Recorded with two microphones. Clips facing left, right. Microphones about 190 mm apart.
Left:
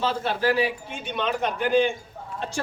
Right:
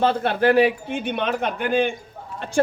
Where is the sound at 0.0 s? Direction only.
60° right (ahead or behind).